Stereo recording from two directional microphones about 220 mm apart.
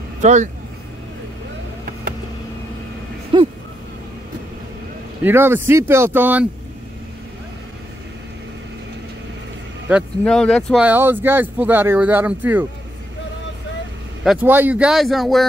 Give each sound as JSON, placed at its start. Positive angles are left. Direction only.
{"t": 0.2, "sound": "speech", "side_deg": -35}
{"t": 3.3, "sound": "a sound", "side_deg": -25}
{"t": 5.2, "sound": "speech", "side_deg": -10}
{"t": 9.8, "sound": "speech", "side_deg": 0}
{"t": 14.2, "sound": "speech", "side_deg": -5}